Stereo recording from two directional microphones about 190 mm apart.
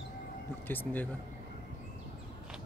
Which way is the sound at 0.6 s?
10° left (ahead or behind).